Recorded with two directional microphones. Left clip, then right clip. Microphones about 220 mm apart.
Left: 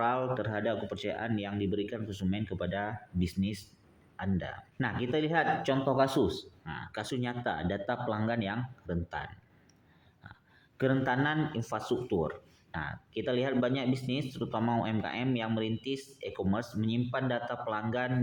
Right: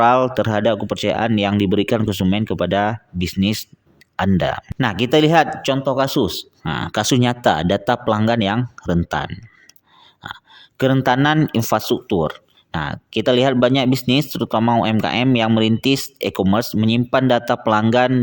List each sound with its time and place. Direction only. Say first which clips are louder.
0.0 s speech: right 16 dB; 50° right (ahead or behind)